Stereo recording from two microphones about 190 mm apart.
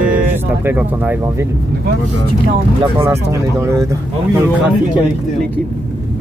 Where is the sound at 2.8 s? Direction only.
15° right (ahead or behind).